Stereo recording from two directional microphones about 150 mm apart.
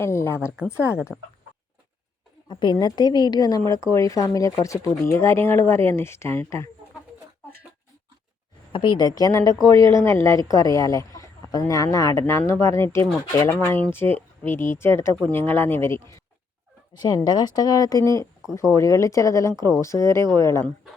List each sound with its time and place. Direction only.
0.0 s speech: 15° left (ahead or behind)
0.3 s a woman's voice: 5° right (ahead or behind)
2.5 s a woman's voice: 30° left (ahead or behind)
8.7 s a woman's voice: 30° left (ahead or behind)
17.2 s a woman's voice: 25° left (ahead or behind)